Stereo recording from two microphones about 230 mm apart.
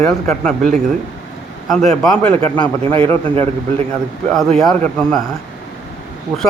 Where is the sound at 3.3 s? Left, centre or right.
Right.